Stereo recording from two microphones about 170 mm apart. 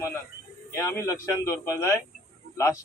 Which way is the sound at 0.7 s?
15° left (ahead or behind).